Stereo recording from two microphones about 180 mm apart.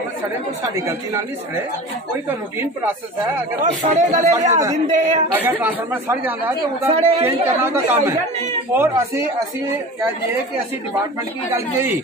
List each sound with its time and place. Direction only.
0.7 s speech: 15° right (ahead or behind)
2.2 s speech: 10° right (ahead or behind)
3.9 s speech: 40° right (ahead or behind)
4.5 s a man's voice: 20° right (ahead or behind)
4.8 s a man's voice: 45° right (ahead or behind)
5.3 s speech: 10° right (ahead or behind)
6.9 s speech: 35° right (ahead or behind)
7.2 s speech: 15° right (ahead or behind)
11.5 s speech: 15° right (ahead or behind)